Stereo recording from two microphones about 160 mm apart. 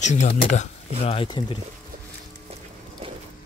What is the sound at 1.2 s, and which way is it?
Speech, 30° left (ahead or behind).